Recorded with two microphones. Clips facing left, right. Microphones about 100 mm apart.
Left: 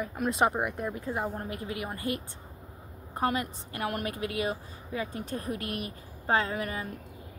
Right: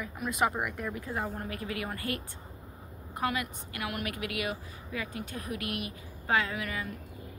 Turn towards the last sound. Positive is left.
turn(degrees=35)  # may be behind; listen again after turning